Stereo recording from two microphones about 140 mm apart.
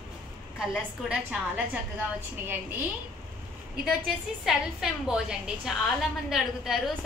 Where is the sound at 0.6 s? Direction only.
10° right (ahead or behind).